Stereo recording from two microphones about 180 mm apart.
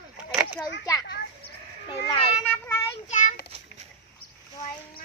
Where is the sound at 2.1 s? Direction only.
35° left (ahead or behind).